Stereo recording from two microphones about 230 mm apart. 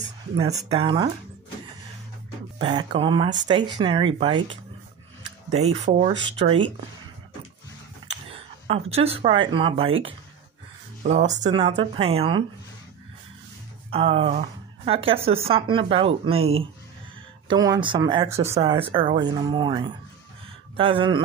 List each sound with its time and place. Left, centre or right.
0.7 s speech: right
2.6 s speech: centre
8.3 s a sound: right
8.9 s speech: right
11.5 s speech: right
13.8 s speech: right